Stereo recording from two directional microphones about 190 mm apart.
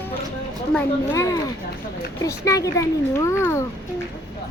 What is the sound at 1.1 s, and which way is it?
A child's voice, 15° left (ahead or behind).